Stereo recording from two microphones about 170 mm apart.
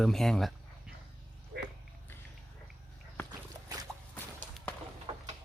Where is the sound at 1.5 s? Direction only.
80° right.